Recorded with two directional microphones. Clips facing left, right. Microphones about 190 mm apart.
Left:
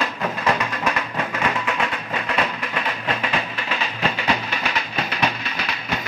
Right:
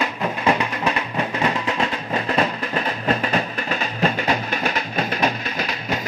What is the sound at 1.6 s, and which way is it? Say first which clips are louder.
Music: right 2 dB; 35° right (ahead or behind).